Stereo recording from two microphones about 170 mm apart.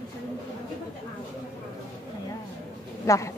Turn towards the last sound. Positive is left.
turn(degrees=15)  # may be behind; listen again after turning